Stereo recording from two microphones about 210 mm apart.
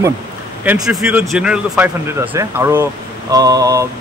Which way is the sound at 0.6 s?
5° right (ahead or behind).